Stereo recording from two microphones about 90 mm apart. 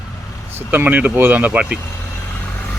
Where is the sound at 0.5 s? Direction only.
20° right (ahead or behind).